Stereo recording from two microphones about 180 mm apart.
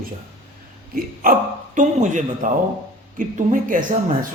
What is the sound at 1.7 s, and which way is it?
Speech, 45° right (ahead or behind).